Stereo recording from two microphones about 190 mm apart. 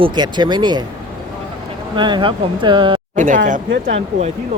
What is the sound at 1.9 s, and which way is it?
Speech, 25° right (ahead or behind).